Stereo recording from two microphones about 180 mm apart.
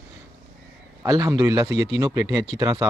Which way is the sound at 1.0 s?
20° right (ahead or behind).